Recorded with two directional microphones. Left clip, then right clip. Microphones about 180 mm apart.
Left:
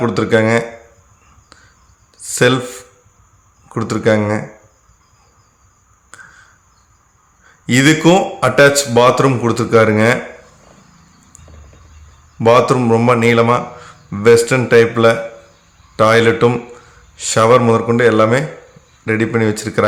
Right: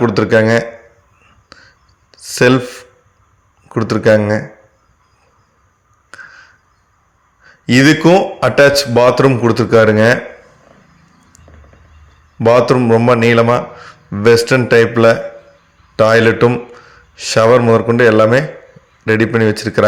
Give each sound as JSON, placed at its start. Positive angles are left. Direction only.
{"t": 0.0, "sound": "speech", "side_deg": -20}
{"t": 1.5, "sound": "whispering", "side_deg": -20}
{"t": 2.2, "sound": "a sound", "side_deg": -20}
{"t": 3.7, "sound": "speech", "side_deg": -15}
{"t": 6.1, "sound": "a sound", "side_deg": -20}
{"t": 7.4, "sound": "speech", "side_deg": -20}
{"t": 12.4, "sound": "speech", "side_deg": -20}
{"t": 16.7, "sound": "a sound", "side_deg": -20}
{"t": 17.7, "sound": "speech", "side_deg": -20}